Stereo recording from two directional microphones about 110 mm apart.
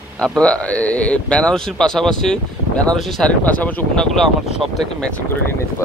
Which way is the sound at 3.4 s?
15° left (ahead or behind).